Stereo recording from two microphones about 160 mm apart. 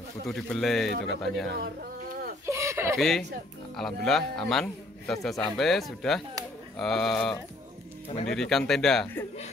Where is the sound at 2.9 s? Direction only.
Centre (ahead or behind).